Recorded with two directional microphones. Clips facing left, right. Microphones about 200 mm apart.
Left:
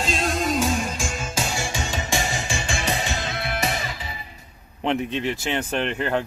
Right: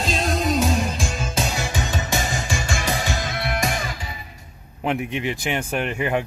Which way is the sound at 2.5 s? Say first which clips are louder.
Right 2 dB; 40° right (ahead or behind).